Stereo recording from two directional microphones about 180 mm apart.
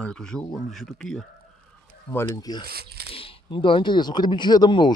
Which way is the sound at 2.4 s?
20° left (ahead or behind).